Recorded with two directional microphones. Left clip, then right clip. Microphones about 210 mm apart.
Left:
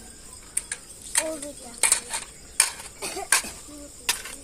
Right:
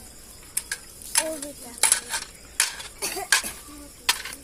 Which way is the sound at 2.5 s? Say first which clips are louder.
Even; centre (ahead or behind).